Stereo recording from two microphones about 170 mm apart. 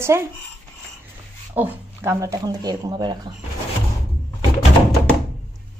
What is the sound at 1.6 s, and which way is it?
Speech, 15° right (ahead or behind).